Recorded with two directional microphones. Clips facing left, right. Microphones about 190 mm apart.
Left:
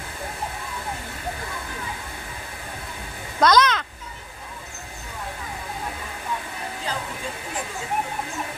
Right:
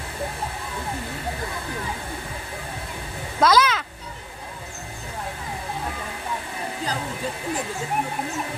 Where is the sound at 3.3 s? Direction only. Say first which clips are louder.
Even; 5° right (ahead or behind).